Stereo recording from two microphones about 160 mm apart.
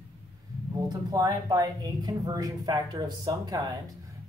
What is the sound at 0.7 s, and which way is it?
Speech, 25° right (ahead or behind).